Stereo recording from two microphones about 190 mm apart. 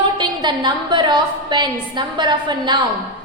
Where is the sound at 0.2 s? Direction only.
25° right (ahead or behind).